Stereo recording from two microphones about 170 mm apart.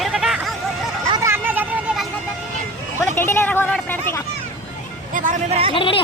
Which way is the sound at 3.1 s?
15° left (ahead or behind).